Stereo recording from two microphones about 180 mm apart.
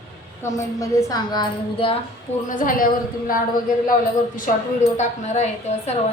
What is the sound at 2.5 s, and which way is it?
Speech, 50° left (ahead or behind).